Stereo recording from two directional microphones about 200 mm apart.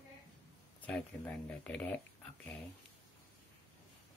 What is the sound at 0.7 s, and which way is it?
Speech, 5° left (ahead or behind).